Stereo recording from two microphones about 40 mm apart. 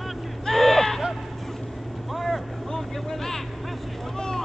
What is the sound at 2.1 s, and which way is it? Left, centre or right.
Vehicle, centre.